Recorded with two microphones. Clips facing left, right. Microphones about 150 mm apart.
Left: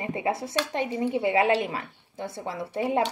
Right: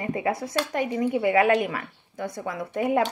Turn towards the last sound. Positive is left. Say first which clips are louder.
# right 2 dB
turn(degrees=25)  # may be behind; listen again after turning